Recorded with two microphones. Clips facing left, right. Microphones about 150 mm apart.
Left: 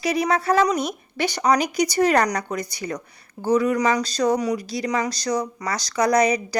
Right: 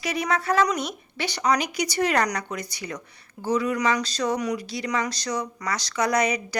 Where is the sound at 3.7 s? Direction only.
35° left (ahead or behind).